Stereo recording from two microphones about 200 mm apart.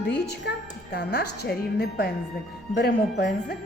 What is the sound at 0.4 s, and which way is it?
Speech, 55° left (ahead or behind).